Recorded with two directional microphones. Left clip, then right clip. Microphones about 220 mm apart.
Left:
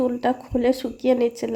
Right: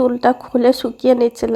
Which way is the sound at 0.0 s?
15° right (ahead or behind).